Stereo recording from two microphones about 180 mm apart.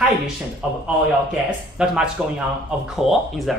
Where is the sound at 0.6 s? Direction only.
Centre (ahead or behind).